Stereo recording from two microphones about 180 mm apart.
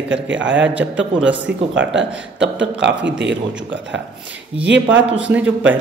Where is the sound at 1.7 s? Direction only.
90° right.